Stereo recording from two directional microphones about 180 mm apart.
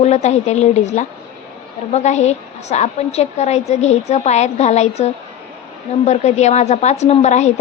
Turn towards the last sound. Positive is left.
turn(degrees=40)  # may be behind; listen again after turning